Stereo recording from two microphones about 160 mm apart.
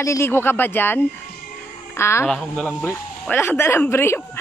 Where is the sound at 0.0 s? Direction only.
15° left (ahead or behind).